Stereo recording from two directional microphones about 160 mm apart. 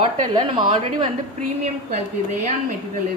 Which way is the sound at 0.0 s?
30° right (ahead or behind).